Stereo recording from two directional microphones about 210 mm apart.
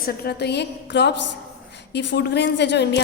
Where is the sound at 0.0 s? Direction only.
50° left (ahead or behind).